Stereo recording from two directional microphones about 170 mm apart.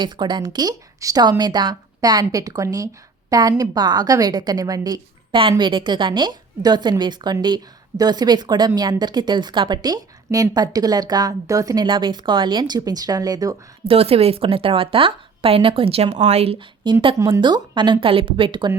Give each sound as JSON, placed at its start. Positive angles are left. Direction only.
{"t": 0.0, "sound": "speech", "side_deg": -25}
{"t": 13.8, "sound": "a woman's voice", "side_deg": -35}